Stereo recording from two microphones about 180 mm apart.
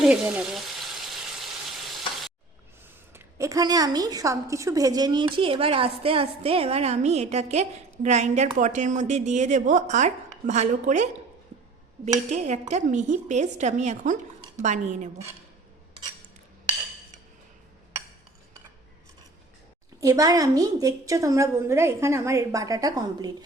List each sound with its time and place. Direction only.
0.0 s frying: 5° right (ahead or behind)
3.1 s a woman's voice: 15° right (ahead or behind); by 11.2 s 40° right (ahead or behind)
12.3 s speech: 40° right (ahead or behind)
20.0 s a woman's voice: 20° right (ahead or behind)